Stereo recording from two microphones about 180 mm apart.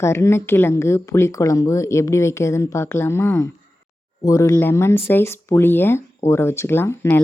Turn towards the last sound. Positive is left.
turn(degrees=10)  # may be behind; listen again after turning